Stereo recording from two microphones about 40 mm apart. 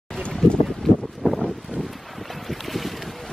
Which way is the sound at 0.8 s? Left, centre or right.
Centre.